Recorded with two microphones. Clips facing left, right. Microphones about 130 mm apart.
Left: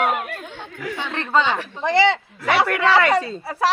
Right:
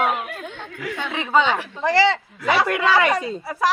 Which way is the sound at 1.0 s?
10° right (ahead or behind).